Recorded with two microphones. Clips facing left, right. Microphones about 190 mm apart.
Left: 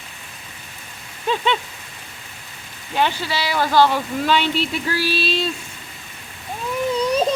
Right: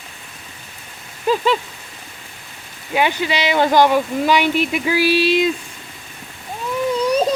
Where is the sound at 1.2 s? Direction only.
5° right (ahead or behind).